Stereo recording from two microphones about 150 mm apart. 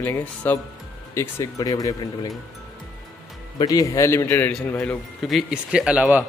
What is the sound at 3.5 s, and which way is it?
Speech, 25° left (ahead or behind).